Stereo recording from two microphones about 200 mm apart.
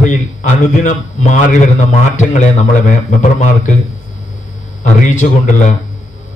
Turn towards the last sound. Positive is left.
turn(degrees=40)  # may be behind; listen again after turning